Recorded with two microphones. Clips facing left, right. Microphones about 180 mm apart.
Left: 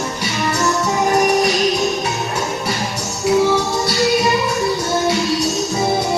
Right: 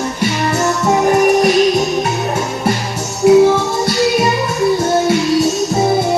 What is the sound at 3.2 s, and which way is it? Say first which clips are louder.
Music: right 8 dB; 55° right (ahead or behind).